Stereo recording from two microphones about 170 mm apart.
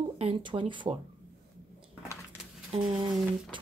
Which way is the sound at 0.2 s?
30° right (ahead or behind).